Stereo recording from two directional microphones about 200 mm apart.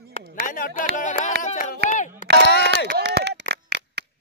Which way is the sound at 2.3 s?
55° left (ahead or behind).